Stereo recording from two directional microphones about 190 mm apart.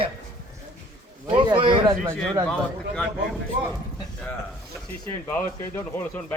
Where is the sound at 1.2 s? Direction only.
25° right (ahead or behind).